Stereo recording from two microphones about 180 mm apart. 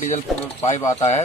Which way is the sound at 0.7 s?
20° left (ahead or behind).